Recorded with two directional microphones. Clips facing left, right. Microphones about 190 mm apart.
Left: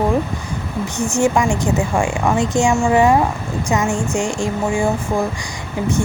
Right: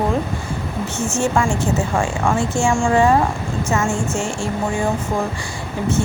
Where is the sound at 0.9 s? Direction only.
15° left (ahead or behind).